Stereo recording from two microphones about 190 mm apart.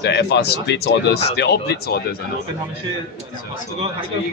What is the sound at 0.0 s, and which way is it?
Speech, 65° left (ahead or behind).